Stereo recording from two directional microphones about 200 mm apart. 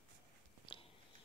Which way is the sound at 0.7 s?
25° left (ahead or behind).